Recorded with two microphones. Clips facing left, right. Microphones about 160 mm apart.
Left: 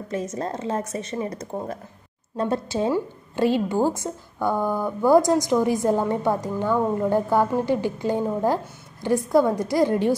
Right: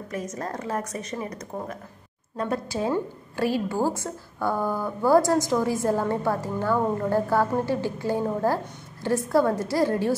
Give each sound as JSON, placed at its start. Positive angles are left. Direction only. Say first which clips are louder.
{"t": 0.1, "sound": "a woman's voice", "louder": "left 4 dB", "side_deg": 25}